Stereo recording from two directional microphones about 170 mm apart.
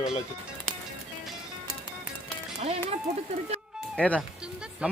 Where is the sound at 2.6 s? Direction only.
35° right (ahead or behind).